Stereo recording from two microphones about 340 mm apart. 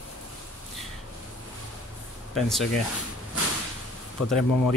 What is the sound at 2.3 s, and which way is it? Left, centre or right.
Speech, centre.